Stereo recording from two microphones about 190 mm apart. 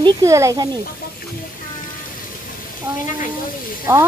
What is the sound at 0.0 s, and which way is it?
Speech, 15° right (ahead or behind).